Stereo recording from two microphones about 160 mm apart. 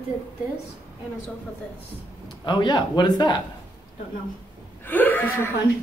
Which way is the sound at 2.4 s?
30° left (ahead or behind).